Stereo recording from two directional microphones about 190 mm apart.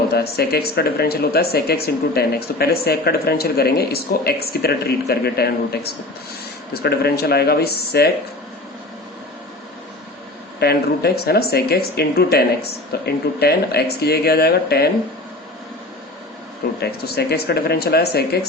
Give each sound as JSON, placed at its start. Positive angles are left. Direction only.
{"t": 0.1, "sound": "speech", "side_deg": 55}
{"t": 10.6, "sound": "speech", "side_deg": 60}
{"t": 16.8, "sound": "speech", "side_deg": 60}